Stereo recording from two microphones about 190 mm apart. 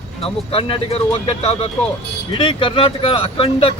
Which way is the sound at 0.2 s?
30° left (ahead or behind).